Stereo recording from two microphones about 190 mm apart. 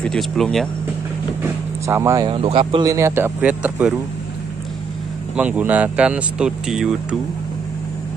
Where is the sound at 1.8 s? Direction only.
15° right (ahead or behind).